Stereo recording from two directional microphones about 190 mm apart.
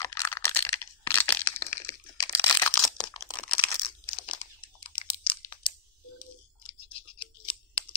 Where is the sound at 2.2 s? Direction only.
20° left (ahead or behind).